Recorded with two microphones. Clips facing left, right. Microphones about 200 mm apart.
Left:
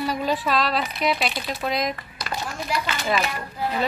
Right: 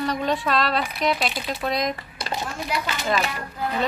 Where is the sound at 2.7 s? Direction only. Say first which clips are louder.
Left 1 dB; centre (ahead or behind).